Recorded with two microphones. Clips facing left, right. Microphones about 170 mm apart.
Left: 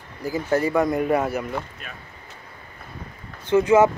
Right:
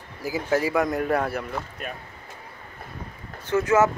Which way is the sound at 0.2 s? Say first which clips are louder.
Left 2 dB; 5° right (ahead or behind).